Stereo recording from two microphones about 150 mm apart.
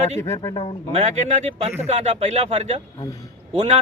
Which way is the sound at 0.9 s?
50° right (ahead or behind).